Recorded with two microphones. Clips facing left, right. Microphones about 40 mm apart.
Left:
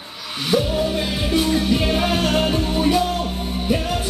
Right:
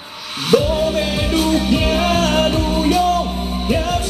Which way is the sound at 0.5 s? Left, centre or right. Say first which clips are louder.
Right 6 dB; right.